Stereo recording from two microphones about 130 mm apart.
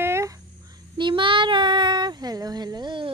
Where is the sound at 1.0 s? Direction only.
40° right (ahead or behind).